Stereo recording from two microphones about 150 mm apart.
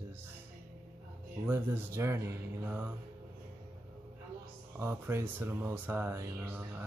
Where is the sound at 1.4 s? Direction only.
15° right (ahead or behind).